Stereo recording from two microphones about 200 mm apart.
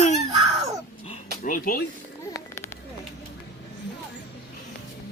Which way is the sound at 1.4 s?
45° left (ahead or behind).